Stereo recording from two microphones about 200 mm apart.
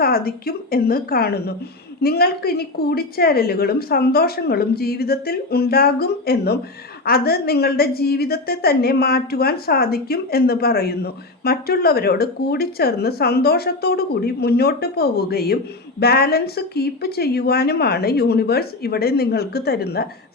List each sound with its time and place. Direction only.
0.0 s a woman's voice: 50° left (ahead or behind)